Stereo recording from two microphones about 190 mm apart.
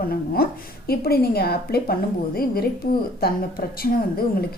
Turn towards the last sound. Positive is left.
turn(degrees=50)  # may be behind; listen again after turning